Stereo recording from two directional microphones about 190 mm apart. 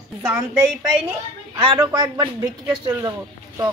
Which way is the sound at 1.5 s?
20° right (ahead or behind).